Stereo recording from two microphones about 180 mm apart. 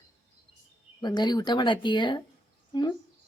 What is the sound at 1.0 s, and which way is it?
Speech, 25° left (ahead or behind).